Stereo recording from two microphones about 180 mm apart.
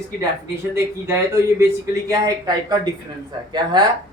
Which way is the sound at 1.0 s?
15° right (ahead or behind).